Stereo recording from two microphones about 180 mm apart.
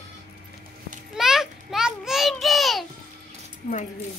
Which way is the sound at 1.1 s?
Centre (ahead or behind).